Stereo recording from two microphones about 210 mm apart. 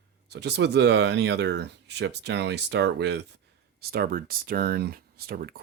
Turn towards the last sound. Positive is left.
turn(degrees=-45)  # may be behind; listen again after turning